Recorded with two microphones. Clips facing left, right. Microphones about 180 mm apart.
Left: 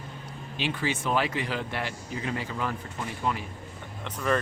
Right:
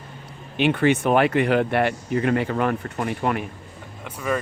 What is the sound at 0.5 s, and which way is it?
Speech, 65° right (ahead or behind).